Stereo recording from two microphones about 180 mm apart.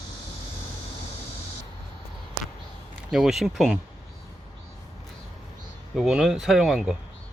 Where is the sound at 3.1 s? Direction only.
Centre (ahead or behind).